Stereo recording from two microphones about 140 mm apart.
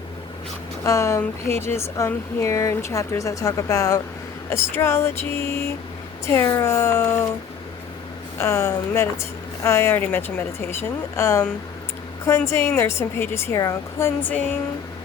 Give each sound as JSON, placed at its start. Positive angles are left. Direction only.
{"t": 0.9, "sound": "a woman's voice", "side_deg": 20}
{"t": 8.4, "sound": "a woman's voice", "side_deg": 20}